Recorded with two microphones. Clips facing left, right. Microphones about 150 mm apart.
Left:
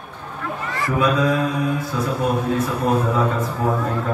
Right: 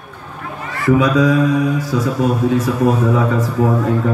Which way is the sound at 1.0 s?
90° right.